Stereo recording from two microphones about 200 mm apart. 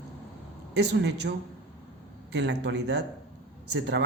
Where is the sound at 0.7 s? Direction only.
60° right (ahead or behind).